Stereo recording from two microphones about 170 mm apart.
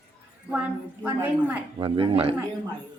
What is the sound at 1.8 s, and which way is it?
Speech, 30° right (ahead or behind).